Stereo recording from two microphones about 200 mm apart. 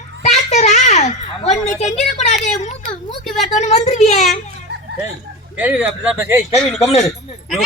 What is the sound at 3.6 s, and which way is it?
Speech, 35° left (ahead or behind).